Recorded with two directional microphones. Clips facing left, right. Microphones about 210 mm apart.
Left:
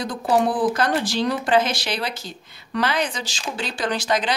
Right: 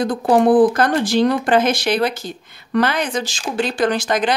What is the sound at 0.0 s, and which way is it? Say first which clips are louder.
Speech: right 6 dB; 55° right (ahead or behind).